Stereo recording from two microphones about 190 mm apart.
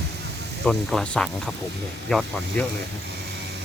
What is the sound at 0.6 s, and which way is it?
Speech, centre (ahead or behind).